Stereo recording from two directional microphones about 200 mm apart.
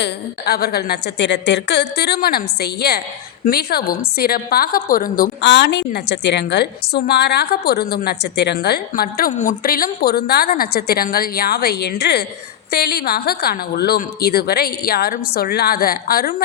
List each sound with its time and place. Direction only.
0.0 s a woman's voice: 50° left (ahead or behind)